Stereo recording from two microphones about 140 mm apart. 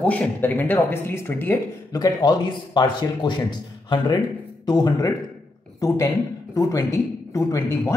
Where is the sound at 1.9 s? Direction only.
30° left (ahead or behind).